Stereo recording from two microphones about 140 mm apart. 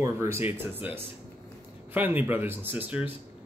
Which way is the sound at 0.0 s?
20° right (ahead or behind).